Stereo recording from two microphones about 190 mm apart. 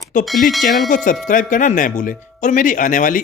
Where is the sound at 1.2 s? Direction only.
45° left (ahead or behind).